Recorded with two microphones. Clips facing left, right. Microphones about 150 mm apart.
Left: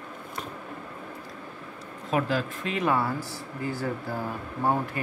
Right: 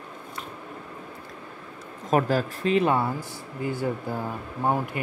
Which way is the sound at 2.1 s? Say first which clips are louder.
Right 4 dB; 40° right (ahead or behind).